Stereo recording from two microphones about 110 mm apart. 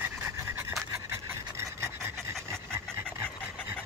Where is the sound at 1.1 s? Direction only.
25° right (ahead or behind).